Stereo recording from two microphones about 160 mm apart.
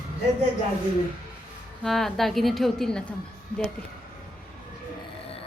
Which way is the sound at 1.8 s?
Centre (ahead or behind).